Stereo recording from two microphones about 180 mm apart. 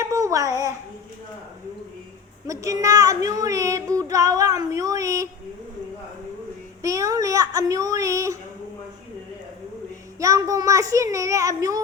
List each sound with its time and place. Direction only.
0.0 s a sound: 15° right (ahead or behind)
0.4 s a child's voice: 15° left (ahead or behind)
2.5 s child singing: 20° right (ahead or behind)
6.8 s a child's voice: 20° right (ahead or behind)
10.2 s a child's voice: 15° right (ahead or behind)